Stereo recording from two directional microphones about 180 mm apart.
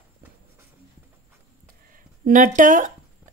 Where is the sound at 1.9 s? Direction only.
50° right (ahead or behind).